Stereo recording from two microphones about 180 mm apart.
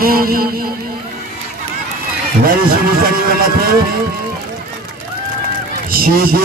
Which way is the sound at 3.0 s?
55° right (ahead or behind).